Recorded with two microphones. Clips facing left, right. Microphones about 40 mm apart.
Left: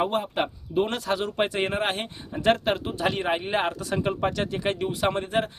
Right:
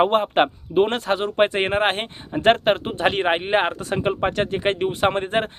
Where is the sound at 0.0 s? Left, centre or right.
Right.